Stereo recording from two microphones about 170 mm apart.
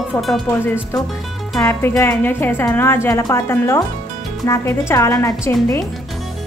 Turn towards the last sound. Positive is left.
turn(degrees=15)  # may be behind; listen again after turning